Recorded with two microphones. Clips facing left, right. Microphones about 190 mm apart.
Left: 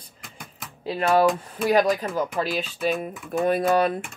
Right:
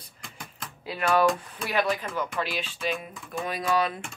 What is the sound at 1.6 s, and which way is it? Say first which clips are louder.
Speech: left 7 dB; 45° left (ahead or behind).